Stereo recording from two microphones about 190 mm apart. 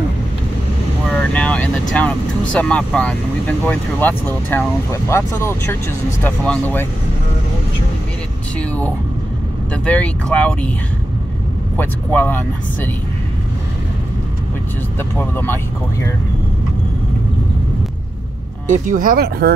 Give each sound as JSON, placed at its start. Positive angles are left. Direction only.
{"t": 1.1, "sound": "vehicle", "side_deg": 5}
{"t": 2.5, "sound": "speech", "side_deg": 5}
{"t": 8.5, "sound": "speech", "side_deg": 10}
{"t": 11.7, "sound": "speech", "side_deg": 10}
{"t": 15.1, "sound": "speech", "side_deg": 10}
{"t": 18.7, "sound": "speech", "side_deg": -45}